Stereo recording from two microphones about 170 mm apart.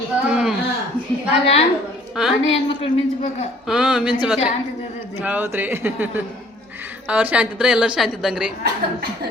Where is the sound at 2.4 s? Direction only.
35° left (ahead or behind).